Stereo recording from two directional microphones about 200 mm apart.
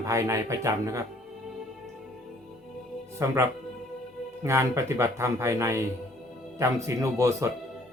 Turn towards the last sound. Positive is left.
turn(degrees=-15)  # may be behind; listen again after turning